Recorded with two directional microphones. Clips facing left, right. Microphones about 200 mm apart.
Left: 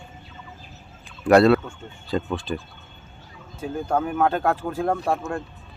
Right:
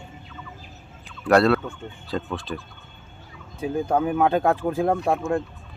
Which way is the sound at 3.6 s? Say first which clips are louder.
Right 2 dB; 15° right (ahead or behind).